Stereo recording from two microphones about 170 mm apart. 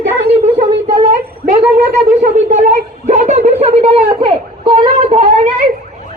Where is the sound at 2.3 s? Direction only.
45° right (ahead or behind).